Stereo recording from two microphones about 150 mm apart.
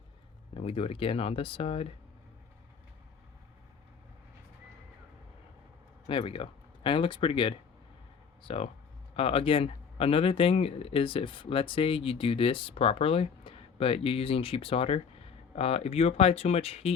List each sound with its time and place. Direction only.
0.5 s speech: 40° left (ahead or behind)
6.1 s speech: 35° left (ahead or behind)